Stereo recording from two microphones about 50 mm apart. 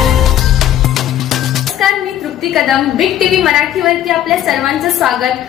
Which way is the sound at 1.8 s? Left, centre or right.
Centre.